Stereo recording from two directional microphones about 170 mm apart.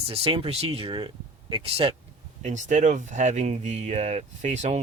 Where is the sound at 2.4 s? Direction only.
45° right (ahead or behind).